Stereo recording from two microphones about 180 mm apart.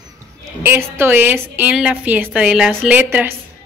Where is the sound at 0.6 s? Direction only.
10° right (ahead or behind).